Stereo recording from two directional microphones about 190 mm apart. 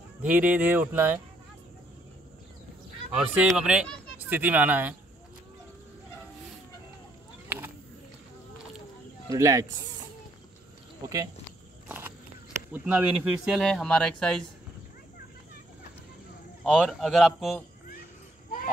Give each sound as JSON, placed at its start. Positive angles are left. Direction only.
{"t": 0.2, "sound": "speech", "side_deg": -5}
{"t": 3.1, "sound": "speech", "side_deg": -5}
{"t": 7.4, "sound": "a sound", "side_deg": -10}
{"t": 9.3, "sound": "speech", "side_deg": -15}
{"t": 12.7, "sound": "speech", "side_deg": -5}
{"t": 16.6, "sound": "speech", "side_deg": 0}